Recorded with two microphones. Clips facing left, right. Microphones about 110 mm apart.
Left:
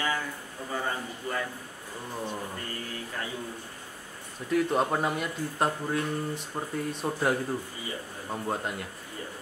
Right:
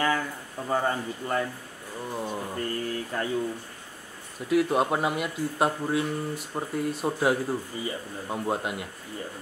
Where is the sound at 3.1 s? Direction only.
45° right (ahead or behind).